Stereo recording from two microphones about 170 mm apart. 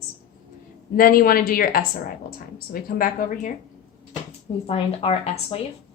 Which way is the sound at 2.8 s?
55° left (ahead or behind).